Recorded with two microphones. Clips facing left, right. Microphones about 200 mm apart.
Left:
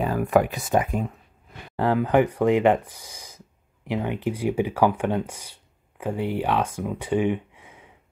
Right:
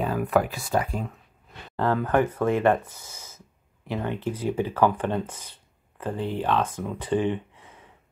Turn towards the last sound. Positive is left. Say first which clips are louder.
# left 1 dB
turn(degrees=10)  # may be behind; listen again after turning